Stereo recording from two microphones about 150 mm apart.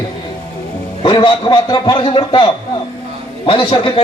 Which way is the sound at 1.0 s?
30° left (ahead or behind).